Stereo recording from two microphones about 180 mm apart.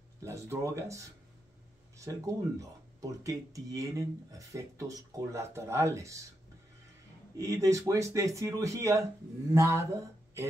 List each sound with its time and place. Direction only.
0.2 s speech: 15° right (ahead or behind)
7.3 s speech: 15° right (ahead or behind)